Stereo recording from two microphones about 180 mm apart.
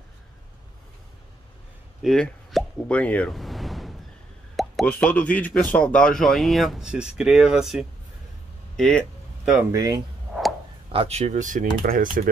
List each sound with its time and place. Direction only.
2.0 s plop: centre (ahead or behind)
4.6 s speech: 5° left (ahead or behind)
8.7 s a sound: 5° left (ahead or behind)
9.7 s speech: 20° right (ahead or behind)
10.9 s speech: 35° right (ahead or behind); by 12.3 s 50° right (ahead or behind)